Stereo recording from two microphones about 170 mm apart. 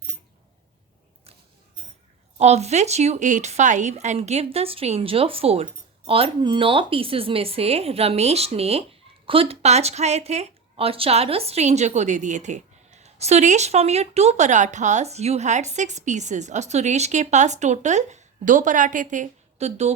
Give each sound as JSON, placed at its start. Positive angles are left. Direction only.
{"t": 2.4, "sound": "a woman's voice", "side_deg": -40}